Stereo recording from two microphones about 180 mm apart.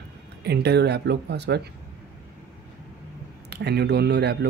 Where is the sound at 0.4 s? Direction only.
65° right (ahead or behind).